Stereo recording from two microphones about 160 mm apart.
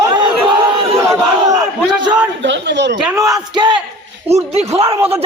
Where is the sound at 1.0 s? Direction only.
20° right (ahead or behind).